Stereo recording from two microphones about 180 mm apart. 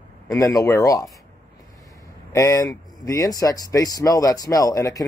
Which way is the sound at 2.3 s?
15° left (ahead or behind).